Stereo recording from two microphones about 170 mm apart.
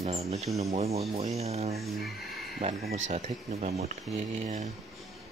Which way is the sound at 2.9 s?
40° right (ahead or behind).